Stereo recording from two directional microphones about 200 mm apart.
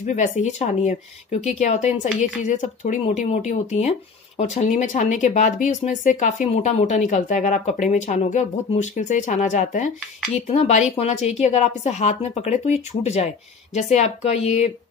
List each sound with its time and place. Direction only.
0.0 s speech: 40° left (ahead or behind)